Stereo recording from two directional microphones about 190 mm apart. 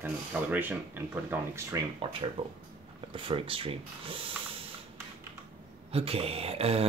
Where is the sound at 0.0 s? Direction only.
10° right (ahead or behind).